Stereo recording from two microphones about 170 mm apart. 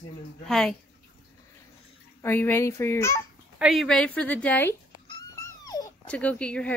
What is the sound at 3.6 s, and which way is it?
A woman's voice, centre (ahead or behind).